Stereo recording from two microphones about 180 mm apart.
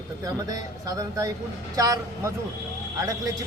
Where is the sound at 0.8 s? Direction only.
20° right (ahead or behind).